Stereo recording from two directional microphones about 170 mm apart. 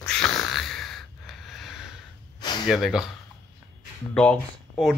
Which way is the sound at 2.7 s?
Centre (ahead or behind).